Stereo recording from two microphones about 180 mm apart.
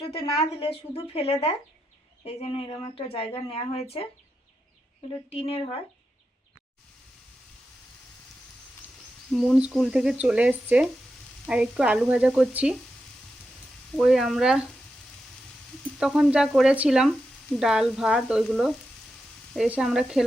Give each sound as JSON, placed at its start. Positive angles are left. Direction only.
{"t": 0.1, "sound": "speech", "side_deg": 30}
{"t": 5.3, "sound": "speech", "side_deg": 35}
{"t": 9.3, "sound": "speech", "side_deg": 0}
{"t": 13.9, "sound": "speech", "side_deg": 0}
{"t": 16.0, "sound": "speech", "side_deg": 0}